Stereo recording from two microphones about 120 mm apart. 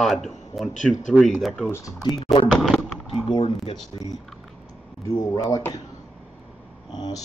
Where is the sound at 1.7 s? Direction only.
30° left (ahead or behind).